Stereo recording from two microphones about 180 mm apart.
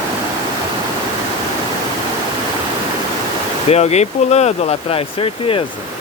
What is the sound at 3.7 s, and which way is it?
Speech, 35° left (ahead or behind).